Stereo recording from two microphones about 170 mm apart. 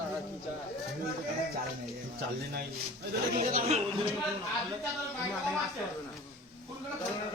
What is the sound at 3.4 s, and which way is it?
Speech, 40° right (ahead or behind).